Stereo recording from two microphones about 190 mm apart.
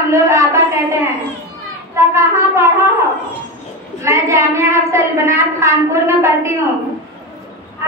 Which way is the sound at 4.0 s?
15° right (ahead or behind).